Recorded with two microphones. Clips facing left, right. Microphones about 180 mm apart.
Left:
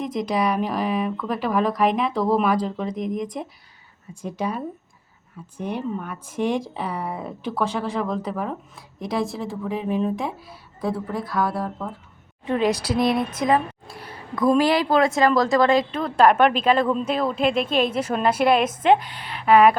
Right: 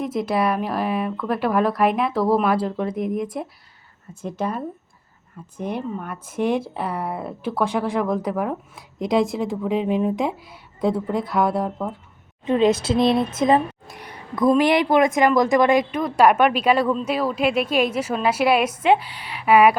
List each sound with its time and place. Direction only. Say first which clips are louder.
0.0 s speech: right 1 dB; 5° right (ahead or behind)
4.1 s speech: right 1 dB; 10° left (ahead or behind)
5.5 s speech: even; 10° right (ahead or behind)